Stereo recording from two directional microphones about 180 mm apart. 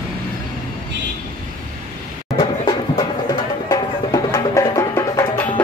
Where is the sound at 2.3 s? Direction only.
25° left (ahead or behind).